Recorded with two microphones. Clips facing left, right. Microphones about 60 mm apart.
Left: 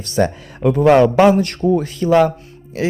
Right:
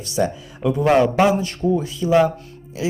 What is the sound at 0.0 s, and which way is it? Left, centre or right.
Speech, left.